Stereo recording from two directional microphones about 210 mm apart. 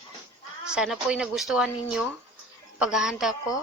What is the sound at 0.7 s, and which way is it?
Speech, 5° right (ahead or behind).